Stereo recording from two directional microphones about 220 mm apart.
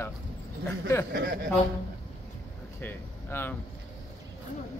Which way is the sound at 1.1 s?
50° right (ahead or behind).